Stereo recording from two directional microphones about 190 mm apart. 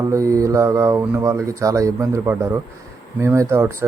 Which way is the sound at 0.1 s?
15° right (ahead or behind).